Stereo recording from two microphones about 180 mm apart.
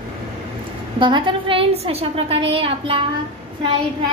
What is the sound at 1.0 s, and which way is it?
A woman's voice, 25° right (ahead or behind).